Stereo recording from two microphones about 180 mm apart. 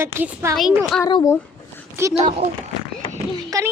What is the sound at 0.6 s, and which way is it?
Speech, centre (ahead or behind).